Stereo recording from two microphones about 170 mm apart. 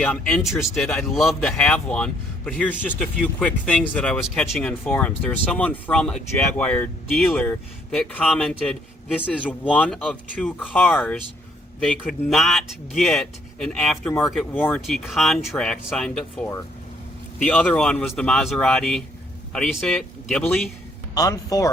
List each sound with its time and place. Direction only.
0.0 s speech: 5° left (ahead or behind)
21.2 s speech: 20° left (ahead or behind)